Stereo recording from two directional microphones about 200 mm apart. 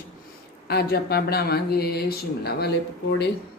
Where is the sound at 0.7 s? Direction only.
50° left (ahead or behind).